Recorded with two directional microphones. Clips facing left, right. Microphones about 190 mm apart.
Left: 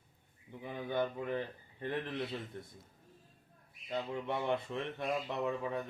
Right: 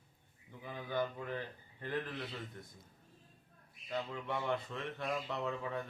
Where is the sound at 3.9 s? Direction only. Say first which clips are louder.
Left 2 dB; 20° left (ahead or behind).